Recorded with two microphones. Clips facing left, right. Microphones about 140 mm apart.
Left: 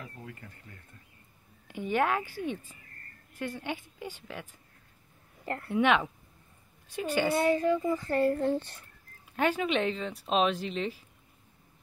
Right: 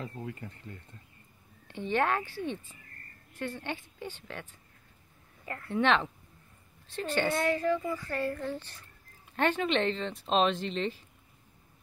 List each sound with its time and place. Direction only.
0.2 s speech: 25° right (ahead or behind)
1.7 s speech: 10° left (ahead or behind)
5.7 s speech: 10° left (ahead or behind)
8.3 s speech: 35° left (ahead or behind)
9.4 s speech: 5° left (ahead or behind)